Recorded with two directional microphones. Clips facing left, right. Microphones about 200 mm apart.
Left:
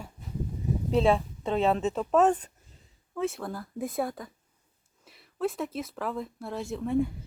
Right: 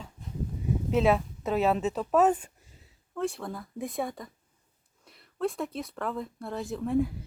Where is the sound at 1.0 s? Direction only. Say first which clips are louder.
Even; 5° right (ahead or behind).